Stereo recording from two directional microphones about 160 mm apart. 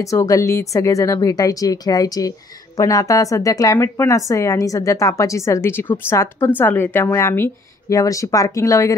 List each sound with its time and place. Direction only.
0.0 s a woman's voice: 20° left (ahead or behind)